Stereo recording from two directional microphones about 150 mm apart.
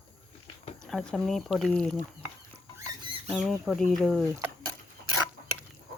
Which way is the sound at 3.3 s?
Centre (ahead or behind).